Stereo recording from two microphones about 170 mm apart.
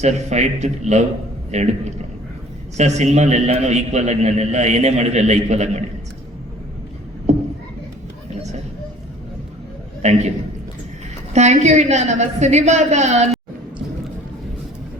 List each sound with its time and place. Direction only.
0.0 s a man's voice: 40° right (ahead or behind)
2.7 s a man's voice: 40° right (ahead or behind)
7.3 s a sound: 40° right (ahead or behind)
10.0 s a woman's voice: 45° right (ahead or behind)
11.3 s a woman's voice: 40° right (ahead or behind)